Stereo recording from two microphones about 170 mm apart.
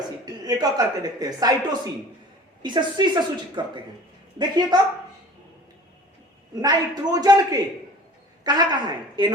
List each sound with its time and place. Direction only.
0.3 s a woman's voice: 20° right (ahead or behind)
6.6 s a woman's voice: 25° right (ahead or behind)